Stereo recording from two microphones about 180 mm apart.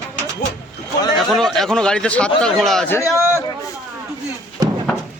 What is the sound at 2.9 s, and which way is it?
Speech, 15° left (ahead or behind).